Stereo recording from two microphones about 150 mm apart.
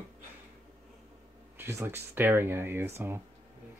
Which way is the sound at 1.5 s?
15° right (ahead or behind).